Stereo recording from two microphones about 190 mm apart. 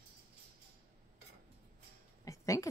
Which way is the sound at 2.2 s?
15° left (ahead or behind).